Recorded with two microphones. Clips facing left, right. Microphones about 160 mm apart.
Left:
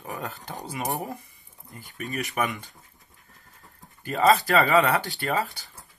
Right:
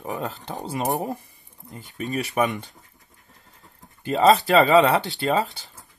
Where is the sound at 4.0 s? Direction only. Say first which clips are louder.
Right 3 dB; 25° right (ahead or behind).